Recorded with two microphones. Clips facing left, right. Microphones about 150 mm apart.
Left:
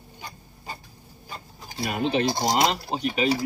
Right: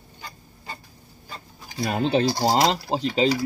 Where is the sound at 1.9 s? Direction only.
30° right (ahead or behind).